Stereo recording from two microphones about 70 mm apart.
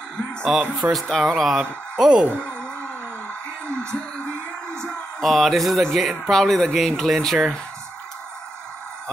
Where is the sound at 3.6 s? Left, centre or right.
Centre.